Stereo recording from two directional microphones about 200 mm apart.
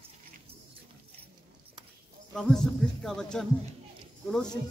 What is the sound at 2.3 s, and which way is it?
Speech, 5° left (ahead or behind).